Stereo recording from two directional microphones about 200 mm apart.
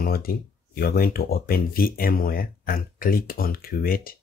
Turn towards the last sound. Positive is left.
turn(degrees=50)  # may be behind; listen again after turning